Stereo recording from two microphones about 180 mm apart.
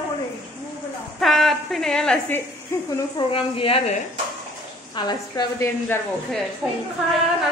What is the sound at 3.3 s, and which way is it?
Speech, 30° left (ahead or behind).